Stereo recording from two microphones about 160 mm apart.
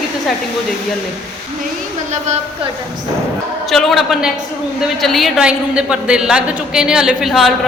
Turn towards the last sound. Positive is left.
turn(degrees=0)  # may be behind; listen again after turning